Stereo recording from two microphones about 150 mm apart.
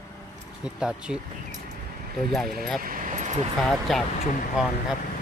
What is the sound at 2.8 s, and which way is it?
Vehicle, 70° right (ahead or behind).